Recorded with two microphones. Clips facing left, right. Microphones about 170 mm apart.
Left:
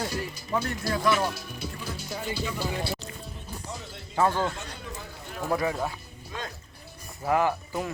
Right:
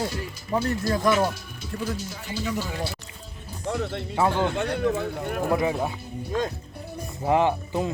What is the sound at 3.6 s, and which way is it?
Speech, 65° right (ahead or behind).